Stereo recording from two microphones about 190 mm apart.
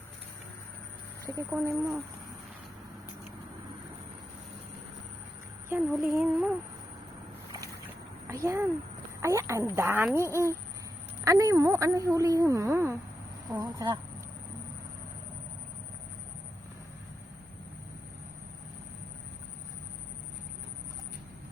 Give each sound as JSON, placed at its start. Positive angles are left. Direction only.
{"t": 1.5, "sound": "a woman's voice", "side_deg": -10}
{"t": 5.6, "sound": "a woman's voice", "side_deg": -15}
{"t": 7.5, "sound": "a sound", "side_deg": -15}
{"t": 9.2, "sound": "a woman's voice", "side_deg": -15}